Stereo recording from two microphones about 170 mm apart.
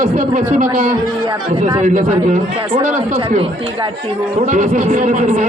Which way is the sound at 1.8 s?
50° right (ahead or behind).